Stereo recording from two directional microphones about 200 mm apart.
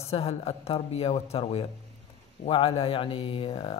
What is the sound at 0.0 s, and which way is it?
Speech, 30° left (ahead or behind).